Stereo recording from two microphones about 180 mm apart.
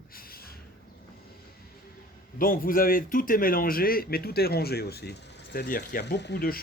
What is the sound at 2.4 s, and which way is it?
Speech, 50° left (ahead or behind).